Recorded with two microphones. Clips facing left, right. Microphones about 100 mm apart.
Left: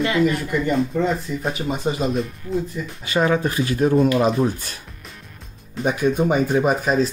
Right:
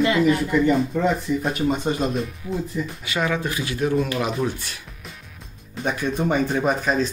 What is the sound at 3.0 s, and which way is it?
Speech, 35° left (ahead or behind).